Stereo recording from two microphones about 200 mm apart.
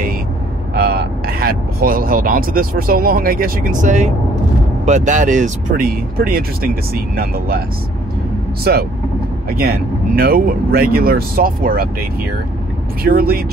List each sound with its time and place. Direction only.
0.7 s speech: 50° right (ahead or behind)
8.7 s speech: 50° right (ahead or behind)
13.0 s speech: 50° right (ahead or behind)